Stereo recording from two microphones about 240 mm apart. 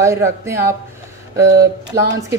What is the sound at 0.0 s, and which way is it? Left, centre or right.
A woman's voice, centre.